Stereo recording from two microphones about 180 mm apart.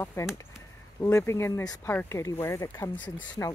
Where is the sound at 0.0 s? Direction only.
15° left (ahead or behind).